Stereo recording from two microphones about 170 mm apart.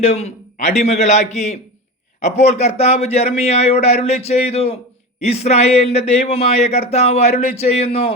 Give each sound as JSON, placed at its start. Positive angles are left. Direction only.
{"t": 0.0, "sound": "speech", "side_deg": 40}